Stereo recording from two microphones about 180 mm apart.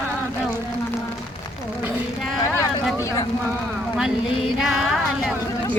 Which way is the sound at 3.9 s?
Centre (ahead or behind).